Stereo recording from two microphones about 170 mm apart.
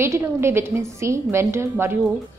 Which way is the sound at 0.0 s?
15° right (ahead or behind).